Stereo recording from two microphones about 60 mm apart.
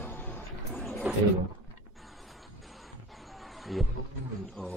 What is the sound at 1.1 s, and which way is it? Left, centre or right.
Speech, right.